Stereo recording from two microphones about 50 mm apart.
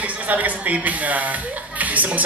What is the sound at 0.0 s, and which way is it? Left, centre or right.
Speech, right.